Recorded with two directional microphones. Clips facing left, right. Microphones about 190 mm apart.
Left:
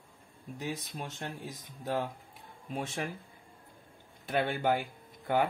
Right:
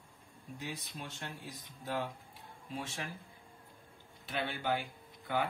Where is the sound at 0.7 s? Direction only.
50° left (ahead or behind).